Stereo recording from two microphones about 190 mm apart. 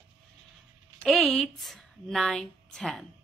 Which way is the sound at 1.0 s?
Centre (ahead or behind).